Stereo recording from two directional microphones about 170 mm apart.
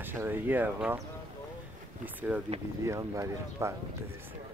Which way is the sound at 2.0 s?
10° right (ahead or behind).